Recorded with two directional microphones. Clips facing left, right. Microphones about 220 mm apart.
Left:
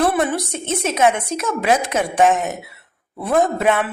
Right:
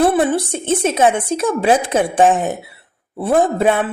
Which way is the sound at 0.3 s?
30° right (ahead or behind).